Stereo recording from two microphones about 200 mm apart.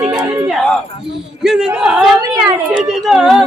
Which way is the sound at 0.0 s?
25° right (ahead or behind).